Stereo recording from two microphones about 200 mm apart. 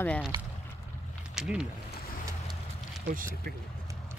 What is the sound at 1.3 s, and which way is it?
Speech, 5° right (ahead or behind).